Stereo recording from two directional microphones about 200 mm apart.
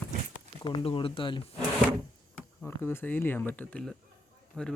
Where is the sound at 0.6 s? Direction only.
25° left (ahead or behind).